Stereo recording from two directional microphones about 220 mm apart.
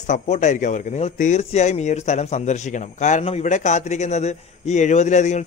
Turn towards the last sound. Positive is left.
turn(degrees=35)  # may be behind; listen again after turning